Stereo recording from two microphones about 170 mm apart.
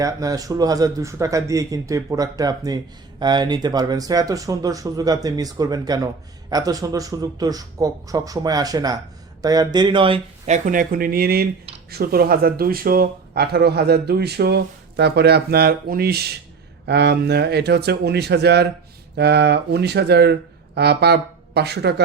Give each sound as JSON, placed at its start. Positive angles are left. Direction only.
{"t": 0.0, "sound": "speech", "side_deg": -20}
{"t": 16.8, "sound": "speech", "side_deg": -75}